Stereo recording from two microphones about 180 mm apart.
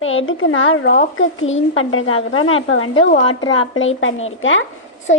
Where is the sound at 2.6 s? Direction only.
90° left.